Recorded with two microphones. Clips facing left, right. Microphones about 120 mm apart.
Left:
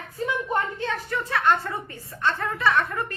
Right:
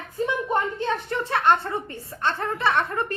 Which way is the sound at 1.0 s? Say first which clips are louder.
Right 1 dB; 25° right (ahead or behind).